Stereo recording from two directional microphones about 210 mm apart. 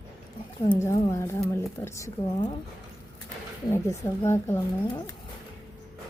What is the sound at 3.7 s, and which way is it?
Speech, 15° left (ahead or behind).